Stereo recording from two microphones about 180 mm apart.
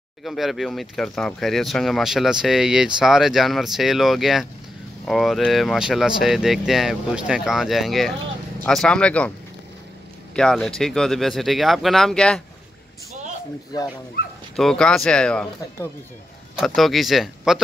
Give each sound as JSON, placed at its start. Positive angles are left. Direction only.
{"t": 0.2, "sound": "speech", "side_deg": 0}
{"t": 10.3, "sound": "speech", "side_deg": 5}
{"t": 13.7, "sound": "speech", "side_deg": 20}
{"t": 14.2, "sound": "speech", "side_deg": 55}
{"t": 14.5, "sound": "speech", "side_deg": 5}
{"t": 16.5, "sound": "speech", "side_deg": 0}